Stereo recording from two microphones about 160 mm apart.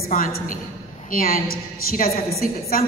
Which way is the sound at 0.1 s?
60° left (ahead or behind).